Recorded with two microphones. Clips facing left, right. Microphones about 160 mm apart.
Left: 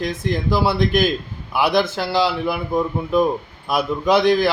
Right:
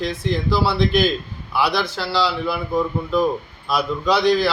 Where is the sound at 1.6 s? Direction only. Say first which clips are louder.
Left 3 dB; 50° left (ahead or behind).